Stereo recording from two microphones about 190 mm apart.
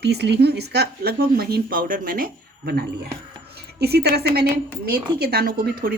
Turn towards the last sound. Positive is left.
turn(degrees=-50)  # may be behind; listen again after turning